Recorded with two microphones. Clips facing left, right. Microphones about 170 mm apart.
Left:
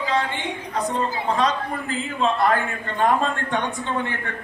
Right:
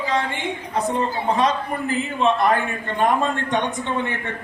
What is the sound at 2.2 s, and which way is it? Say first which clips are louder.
A man's voice: right 1 dB; 20° right (ahead or behind).